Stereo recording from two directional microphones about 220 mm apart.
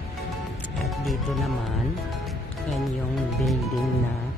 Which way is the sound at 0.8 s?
Centre (ahead or behind).